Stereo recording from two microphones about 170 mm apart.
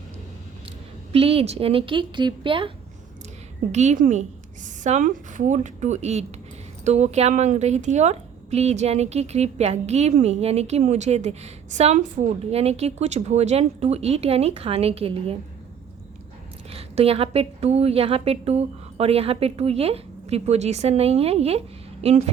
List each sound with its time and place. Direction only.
1.1 s speech: 35° right (ahead or behind)
3.7 s a woman's voice: 40° right (ahead or behind)
16.7 s speech: 35° right (ahead or behind)